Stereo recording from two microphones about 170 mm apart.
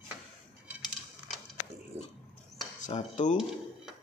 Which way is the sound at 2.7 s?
45° left (ahead or behind).